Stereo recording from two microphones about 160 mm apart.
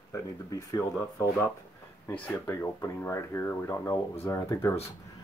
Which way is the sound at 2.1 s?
10° left (ahead or behind).